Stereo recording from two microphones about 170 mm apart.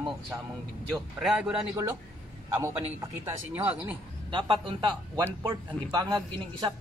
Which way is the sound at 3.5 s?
10° right (ahead or behind).